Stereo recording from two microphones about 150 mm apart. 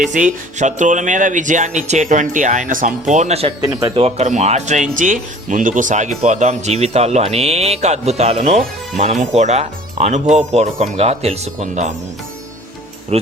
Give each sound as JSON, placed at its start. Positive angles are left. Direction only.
{"t": 0.0, "sound": "speech", "side_deg": -55}
{"t": 3.7, "sound": "speech", "side_deg": -25}
{"t": 3.9, "sound": "speech", "side_deg": -45}